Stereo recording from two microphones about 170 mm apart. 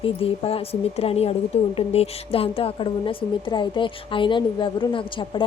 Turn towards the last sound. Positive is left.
turn(degrees=30)  # may be behind; listen again after turning